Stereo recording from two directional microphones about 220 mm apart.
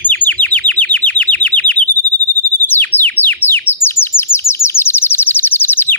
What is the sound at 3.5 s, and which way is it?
Bird, 10° left (ahead or behind).